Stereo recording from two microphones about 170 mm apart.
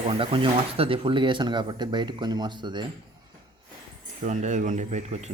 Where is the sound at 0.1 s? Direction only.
30° right (ahead or behind).